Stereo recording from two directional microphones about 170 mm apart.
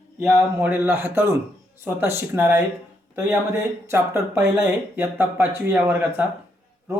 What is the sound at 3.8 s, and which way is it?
A man's voice, 15° right (ahead or behind).